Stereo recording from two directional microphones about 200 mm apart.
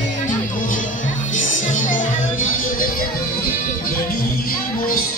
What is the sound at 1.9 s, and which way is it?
Music, 75° left (ahead or behind).